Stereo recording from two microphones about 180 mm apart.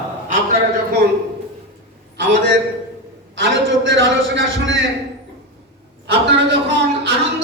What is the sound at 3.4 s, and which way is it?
A man's voice, 85° right.